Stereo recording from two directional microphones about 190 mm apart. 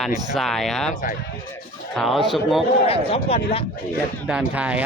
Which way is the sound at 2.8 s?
30° left (ahead or behind).